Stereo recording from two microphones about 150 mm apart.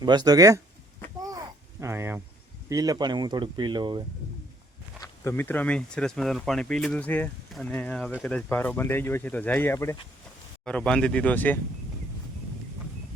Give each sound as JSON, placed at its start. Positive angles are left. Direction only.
{"t": 0.0, "sound": "speech", "side_deg": -30}
{"t": 1.2, "sound": "a sound", "side_deg": -25}
{"t": 2.6, "sound": "speech", "side_deg": -25}
{"t": 5.0, "sound": "speech", "side_deg": 15}
{"t": 10.7, "sound": "speech", "side_deg": 5}